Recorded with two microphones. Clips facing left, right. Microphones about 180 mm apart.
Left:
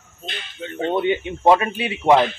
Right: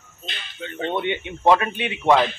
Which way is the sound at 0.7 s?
35° left (ahead or behind).